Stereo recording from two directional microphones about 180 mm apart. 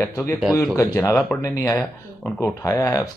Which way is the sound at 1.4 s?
20° left (ahead or behind).